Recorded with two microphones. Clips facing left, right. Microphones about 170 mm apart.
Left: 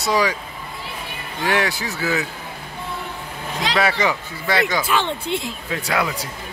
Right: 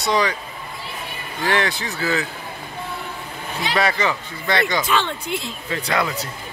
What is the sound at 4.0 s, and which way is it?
Speech, 10° left (ahead or behind).